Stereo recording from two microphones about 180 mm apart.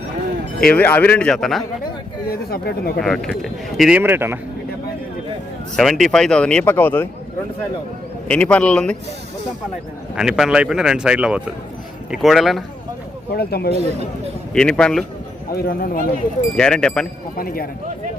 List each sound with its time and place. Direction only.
0.6 s a man's voice: 10° left (ahead or behind)
2.3 s speech: 60° left (ahead or behind)
3.0 s speech: centre (ahead or behind)
5.7 s speech: centre (ahead or behind)
8.3 s a man's voice: 5° left (ahead or behind)
10.2 s speech: 5° right (ahead or behind)
13.3 s speech: 60° left (ahead or behind)
14.5 s speech: 5° left (ahead or behind)
15.5 s speech: 50° left (ahead or behind)
16.6 s speech: 5° left (ahead or behind)
17.3 s speech: 55° left (ahead or behind)